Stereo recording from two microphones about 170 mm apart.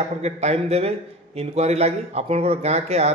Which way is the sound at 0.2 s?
40° right (ahead or behind).